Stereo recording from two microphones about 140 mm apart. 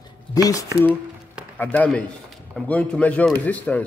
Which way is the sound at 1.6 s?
10° left (ahead or behind).